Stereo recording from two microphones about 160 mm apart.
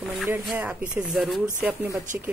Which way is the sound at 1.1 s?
Centre (ahead or behind).